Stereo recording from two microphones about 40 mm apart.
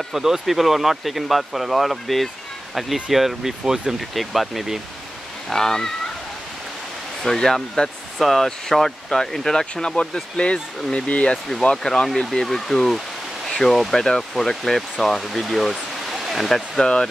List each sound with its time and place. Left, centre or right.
0.1 s speech: centre
4.1 s speech: centre
5.5 s speech: centre
7.2 s speech: centre; by 11.3 s left
11.7 s speech: centre
15.7 s a sound: centre